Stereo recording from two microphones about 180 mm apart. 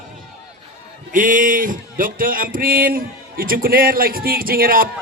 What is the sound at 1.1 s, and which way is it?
A man's voice, 50° right (ahead or behind).